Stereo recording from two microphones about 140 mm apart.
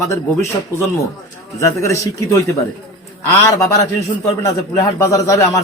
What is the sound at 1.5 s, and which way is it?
Speech, 20° left (ahead or behind).